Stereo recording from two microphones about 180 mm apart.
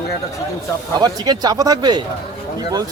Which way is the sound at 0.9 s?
20° right (ahead or behind).